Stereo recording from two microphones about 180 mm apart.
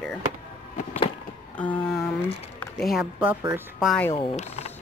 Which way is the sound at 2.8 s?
5° right (ahead or behind).